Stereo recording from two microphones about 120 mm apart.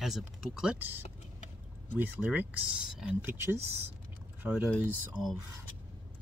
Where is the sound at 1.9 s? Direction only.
15° right (ahead or behind).